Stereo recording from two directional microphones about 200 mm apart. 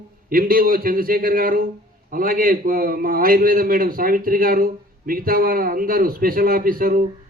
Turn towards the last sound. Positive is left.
turn(degrees=-45)  # may be behind; listen again after turning